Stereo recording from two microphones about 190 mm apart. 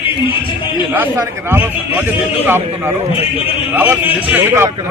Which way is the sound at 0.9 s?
10° right (ahead or behind).